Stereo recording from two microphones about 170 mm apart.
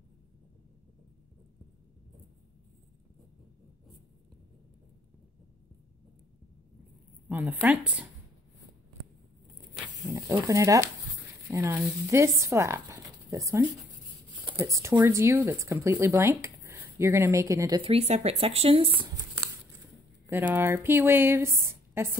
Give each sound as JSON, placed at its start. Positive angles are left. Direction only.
{"t": 7.2, "sound": "a sound", "side_deg": -10}
{"t": 7.6, "sound": "speech", "side_deg": -5}
{"t": 10.0, "sound": "speech", "side_deg": -20}
{"t": 17.9, "sound": "speech", "side_deg": -40}
{"t": 20.2, "sound": "speech", "side_deg": -10}